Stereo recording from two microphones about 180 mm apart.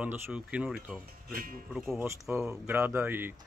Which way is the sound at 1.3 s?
55° right (ahead or behind).